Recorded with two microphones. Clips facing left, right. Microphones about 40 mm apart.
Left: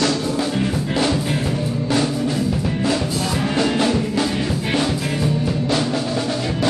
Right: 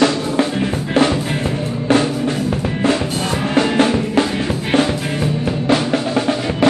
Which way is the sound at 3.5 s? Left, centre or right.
Right.